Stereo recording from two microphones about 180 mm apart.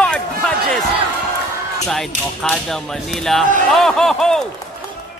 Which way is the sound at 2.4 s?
Centre (ahead or behind).